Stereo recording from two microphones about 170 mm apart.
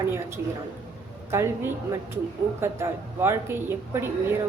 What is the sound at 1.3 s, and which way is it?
A woman's voice, 15° right (ahead or behind).